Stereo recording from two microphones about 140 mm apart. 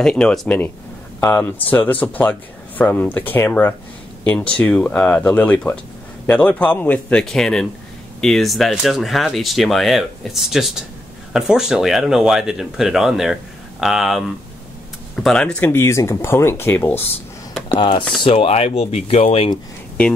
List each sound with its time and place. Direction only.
0.0 s speech: 5° left (ahead or behind)
15.2 s speech: 5° left (ahead or behind)
17.6 s speech: 35° left (ahead or behind)